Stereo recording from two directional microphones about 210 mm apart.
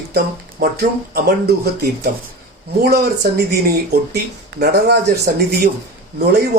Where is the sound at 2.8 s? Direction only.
45° right (ahead or behind).